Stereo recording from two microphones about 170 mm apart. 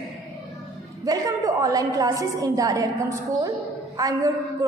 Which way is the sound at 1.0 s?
20° right (ahead or behind).